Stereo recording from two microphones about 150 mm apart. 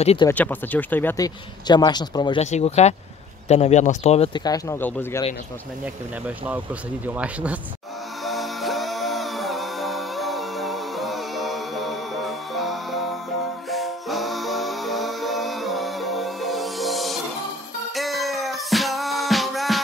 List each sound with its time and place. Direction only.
0.3 s speech: 10° left (ahead or behind)
1.1 s speech: 25° left (ahead or behind)
2.4 s speech: 50° left (ahead or behind)
4.3 s speech: 25° left (ahead or behind)
4.7 s speech: 10° left (ahead or behind)
6.2 s speech: 10° right (ahead or behind)
8.3 s music: centre (ahead or behind)